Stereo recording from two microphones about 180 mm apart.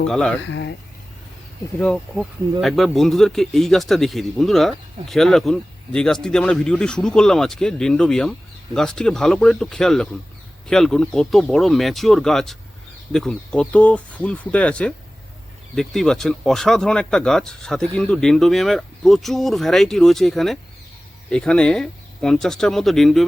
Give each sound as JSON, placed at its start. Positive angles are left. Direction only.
{"t": 0.1, "sound": "speech", "side_deg": 5}
{"t": 0.4, "sound": "speech", "side_deg": 85}
{"t": 1.8, "sound": "speech", "side_deg": 0}